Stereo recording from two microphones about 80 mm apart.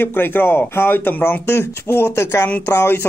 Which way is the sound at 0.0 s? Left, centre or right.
Left.